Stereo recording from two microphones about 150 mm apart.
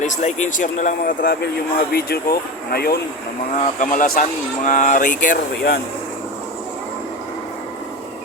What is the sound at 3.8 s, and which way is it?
Speech, 60° left (ahead or behind).